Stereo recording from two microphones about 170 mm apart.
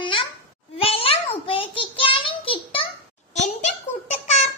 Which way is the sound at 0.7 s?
35° left (ahead or behind).